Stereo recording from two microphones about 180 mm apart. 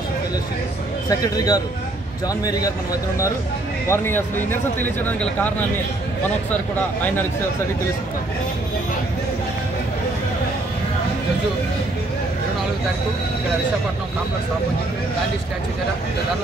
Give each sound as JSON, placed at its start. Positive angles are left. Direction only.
{"t": 1.0, "sound": "speech", "side_deg": 20}
{"t": 3.9, "sound": "speech", "side_deg": 10}